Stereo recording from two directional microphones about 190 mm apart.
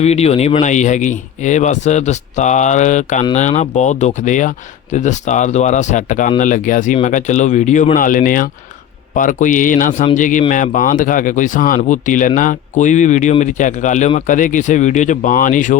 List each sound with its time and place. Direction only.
0.0 s speech: 35° left (ahead or behind)